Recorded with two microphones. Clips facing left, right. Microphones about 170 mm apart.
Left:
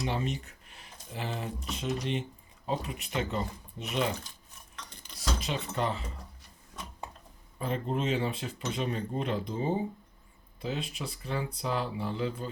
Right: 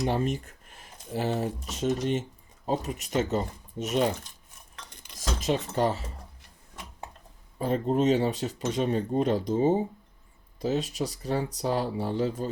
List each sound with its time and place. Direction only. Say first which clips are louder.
0.0 s speech: right 5 dB; 45° right (ahead or behind)
5.1 s speech: right 6 dB; 45° right (ahead or behind)
7.6 s speech: right 7 dB; 40° right (ahead or behind)